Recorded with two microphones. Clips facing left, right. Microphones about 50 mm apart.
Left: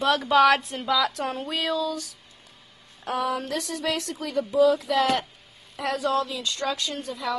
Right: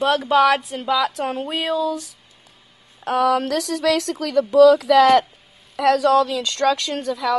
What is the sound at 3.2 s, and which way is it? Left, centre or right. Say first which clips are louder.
A woman's voice: right 10 dB; right.